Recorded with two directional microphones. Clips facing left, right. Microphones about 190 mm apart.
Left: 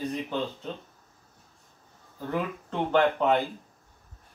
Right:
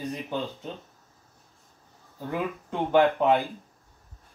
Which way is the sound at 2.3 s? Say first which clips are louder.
Even; 10° right (ahead or behind).